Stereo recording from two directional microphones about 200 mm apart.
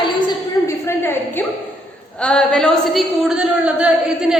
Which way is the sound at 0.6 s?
15° left (ahead or behind).